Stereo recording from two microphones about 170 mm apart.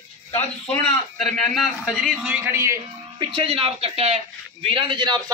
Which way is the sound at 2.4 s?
15° right (ahead or behind).